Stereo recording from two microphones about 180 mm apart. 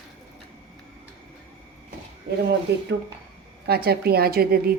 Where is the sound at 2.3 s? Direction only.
65° right (ahead or behind).